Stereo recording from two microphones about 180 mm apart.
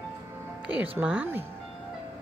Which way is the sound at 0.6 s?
10° right (ahead or behind).